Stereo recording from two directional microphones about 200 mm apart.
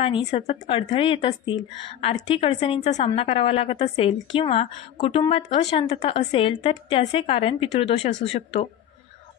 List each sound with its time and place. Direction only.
0.0 s a woman's voice: 25° left (ahead or behind)